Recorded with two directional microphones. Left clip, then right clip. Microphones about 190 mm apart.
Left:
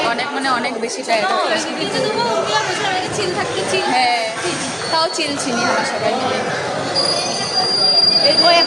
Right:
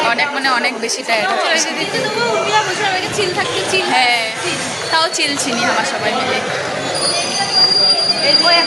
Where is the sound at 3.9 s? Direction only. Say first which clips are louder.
Right 3 dB; 10° left (ahead or behind).